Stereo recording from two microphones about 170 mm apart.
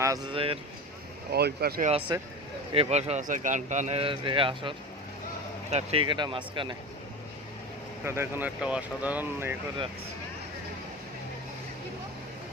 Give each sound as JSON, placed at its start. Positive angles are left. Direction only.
{"t": 0.0, "sound": "speech", "side_deg": -20}
{"t": 0.3, "sound": "a man's voice", "side_deg": -30}
{"t": 1.3, "sound": "speech", "side_deg": -70}
{"t": 2.7, "sound": "a man's voice", "side_deg": -40}
{"t": 5.7, "sound": "speech", "side_deg": -35}
{"t": 8.0, "sound": "speech", "side_deg": -15}